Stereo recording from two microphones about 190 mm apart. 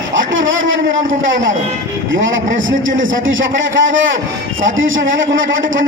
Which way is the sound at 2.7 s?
85° right.